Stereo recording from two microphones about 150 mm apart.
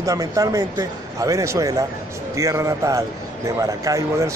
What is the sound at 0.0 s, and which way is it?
Speech, 25° right (ahead or behind).